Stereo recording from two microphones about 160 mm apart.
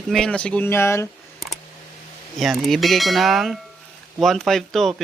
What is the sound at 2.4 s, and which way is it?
Speech, centre (ahead or behind).